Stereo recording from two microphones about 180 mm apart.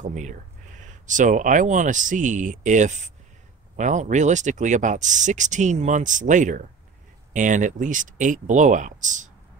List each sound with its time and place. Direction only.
0.0 s speech: 40° right (ahead or behind)